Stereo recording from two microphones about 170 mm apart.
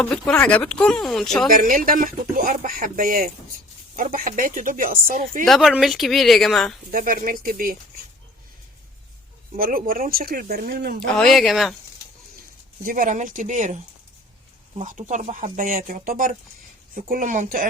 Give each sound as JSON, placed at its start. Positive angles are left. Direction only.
{"t": 0.0, "sound": "speech", "side_deg": 5}
{"t": 1.5, "sound": "speech", "side_deg": -55}
{"t": 5.5, "sound": "speech", "side_deg": 0}
{"t": 6.9, "sound": "speech", "side_deg": -55}
{"t": 9.6, "sound": "speech", "side_deg": -55}
{"t": 11.0, "sound": "speech", "side_deg": 5}
{"t": 12.8, "sound": "speech", "side_deg": -55}
{"t": 14.8, "sound": "speech", "side_deg": -45}